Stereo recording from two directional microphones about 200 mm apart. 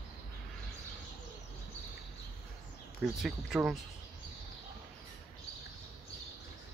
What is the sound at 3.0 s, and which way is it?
Speech, centre (ahead or behind).